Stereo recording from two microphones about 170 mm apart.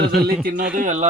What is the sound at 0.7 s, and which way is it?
Speech, 45° right (ahead or behind).